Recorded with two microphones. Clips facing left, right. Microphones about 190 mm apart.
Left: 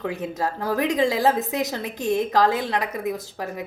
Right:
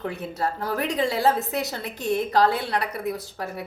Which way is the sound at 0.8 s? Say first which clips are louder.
Left 3 dB; 15° left (ahead or behind).